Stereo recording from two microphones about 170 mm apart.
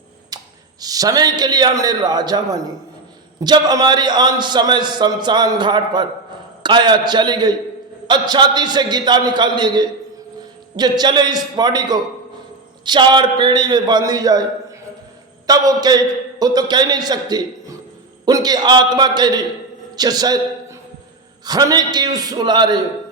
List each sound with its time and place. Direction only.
0.3 s a sound: 25° right (ahead or behind)
0.8 s a man's voice: 20° right (ahead or behind)
15.4 s a man's voice: 20° right (ahead or behind)
21.4 s a man's voice: 25° right (ahead or behind)